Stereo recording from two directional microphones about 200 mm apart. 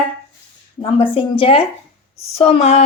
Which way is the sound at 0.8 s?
25° left (ahead or behind).